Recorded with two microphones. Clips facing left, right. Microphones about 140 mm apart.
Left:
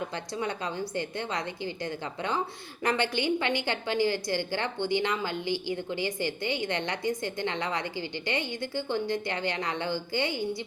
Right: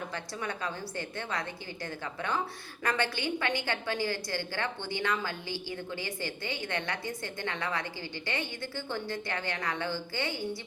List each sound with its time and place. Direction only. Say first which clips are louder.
0.3 s a woman's voice: left 5 dB; 20° left (ahead or behind)